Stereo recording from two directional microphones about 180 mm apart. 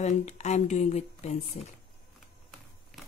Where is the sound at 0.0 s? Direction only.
40° left (ahead or behind).